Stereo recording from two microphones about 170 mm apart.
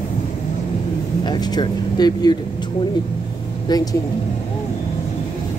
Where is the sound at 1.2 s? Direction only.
25° left (ahead or behind).